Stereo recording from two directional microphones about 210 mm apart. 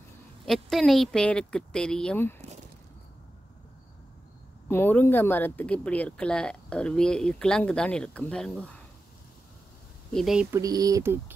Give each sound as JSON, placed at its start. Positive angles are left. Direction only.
{"t": 0.5, "sound": "speech", "side_deg": 0}
{"t": 4.6, "sound": "speech", "side_deg": 10}
{"t": 10.1, "sound": "speech", "side_deg": -5}
{"t": 10.6, "sound": "speech", "side_deg": -15}